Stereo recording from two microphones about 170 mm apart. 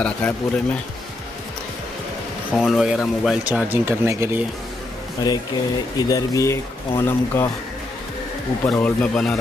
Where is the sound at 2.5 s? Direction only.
Centre (ahead or behind).